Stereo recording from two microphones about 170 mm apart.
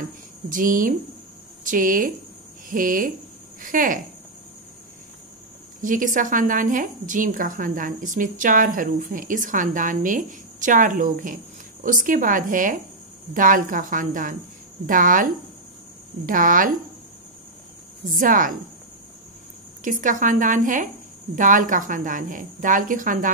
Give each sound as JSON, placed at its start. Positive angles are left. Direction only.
{"t": 0.5, "sound": "a woman's voice", "side_deg": -50}
{"t": 5.8, "sound": "a woman's voice", "side_deg": -50}
{"t": 18.1, "sound": "a woman's voice", "side_deg": -55}
{"t": 19.8, "sound": "a woman's voice", "side_deg": -50}